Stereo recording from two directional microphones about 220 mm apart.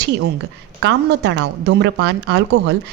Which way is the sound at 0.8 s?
50° right (ahead or behind).